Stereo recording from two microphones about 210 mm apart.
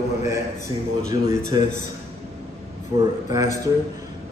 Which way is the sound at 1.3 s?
15° right (ahead or behind).